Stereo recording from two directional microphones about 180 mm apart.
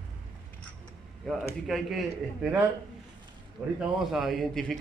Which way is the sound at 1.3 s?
5° left (ahead or behind).